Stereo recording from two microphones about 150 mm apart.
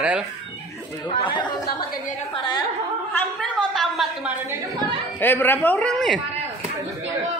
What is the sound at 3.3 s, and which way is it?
Speech, centre (ahead or behind).